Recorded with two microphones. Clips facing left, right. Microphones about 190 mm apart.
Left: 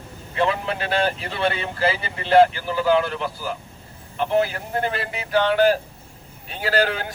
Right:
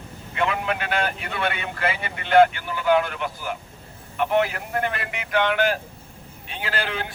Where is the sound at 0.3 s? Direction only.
35° left (ahead or behind).